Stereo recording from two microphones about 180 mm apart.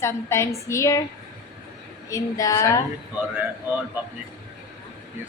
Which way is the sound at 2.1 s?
20° left (ahead or behind).